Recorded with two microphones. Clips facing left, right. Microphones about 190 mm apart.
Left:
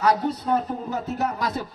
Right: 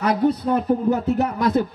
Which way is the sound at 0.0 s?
55° right (ahead or behind).